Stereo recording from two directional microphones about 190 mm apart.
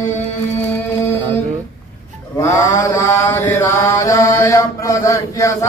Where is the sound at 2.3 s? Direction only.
15° left (ahead or behind).